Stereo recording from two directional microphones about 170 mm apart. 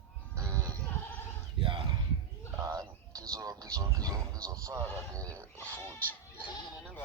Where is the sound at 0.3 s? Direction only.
15° right (ahead or behind).